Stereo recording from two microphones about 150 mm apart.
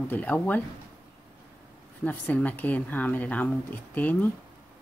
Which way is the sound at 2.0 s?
10° left (ahead or behind).